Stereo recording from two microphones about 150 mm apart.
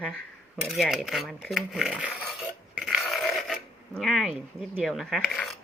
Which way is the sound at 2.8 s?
Centre (ahead or behind).